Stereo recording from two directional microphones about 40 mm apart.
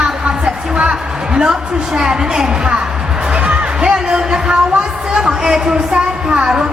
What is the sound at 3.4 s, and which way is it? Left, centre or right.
Music, right.